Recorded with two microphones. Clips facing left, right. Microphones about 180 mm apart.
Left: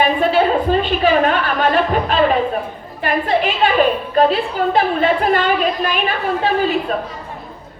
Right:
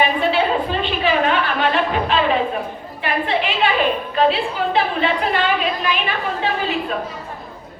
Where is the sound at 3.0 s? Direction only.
45° left (ahead or behind).